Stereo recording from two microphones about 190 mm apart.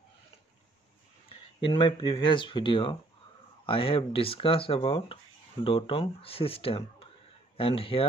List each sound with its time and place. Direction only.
1.6 s speech: 25° left (ahead or behind)